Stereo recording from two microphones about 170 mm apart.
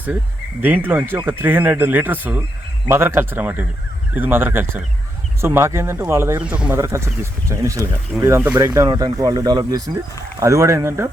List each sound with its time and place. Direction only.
0.6 s speech: 10° right (ahead or behind)